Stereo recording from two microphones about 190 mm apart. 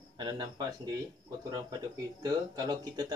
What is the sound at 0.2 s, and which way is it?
Speech, 20° right (ahead or behind).